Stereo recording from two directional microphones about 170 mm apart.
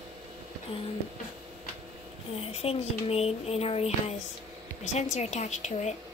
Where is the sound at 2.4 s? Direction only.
35° left (ahead or behind).